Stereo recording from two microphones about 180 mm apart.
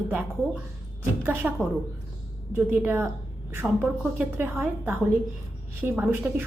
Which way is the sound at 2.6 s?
10° right (ahead or behind).